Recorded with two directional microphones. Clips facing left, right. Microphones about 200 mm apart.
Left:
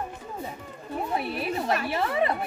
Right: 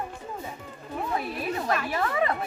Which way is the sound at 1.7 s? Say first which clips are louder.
Even; 25° left (ahead or behind).